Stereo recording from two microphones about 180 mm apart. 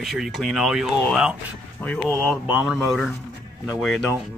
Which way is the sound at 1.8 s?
10° left (ahead or behind).